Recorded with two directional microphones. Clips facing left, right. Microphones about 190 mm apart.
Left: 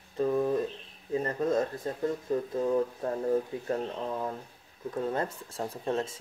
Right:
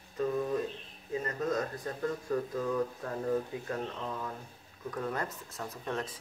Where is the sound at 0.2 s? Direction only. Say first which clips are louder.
Left 4 dB; 30° left (ahead or behind).